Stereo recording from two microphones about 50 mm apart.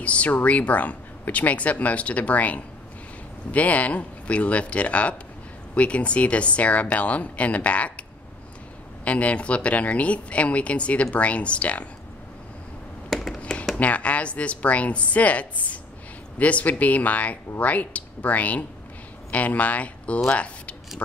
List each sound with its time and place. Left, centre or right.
0.0 s speech: left
9.0 s speech: left
13.1 s computer keyboard: centre
13.4 s computer keyboard: left
13.7 s speech: left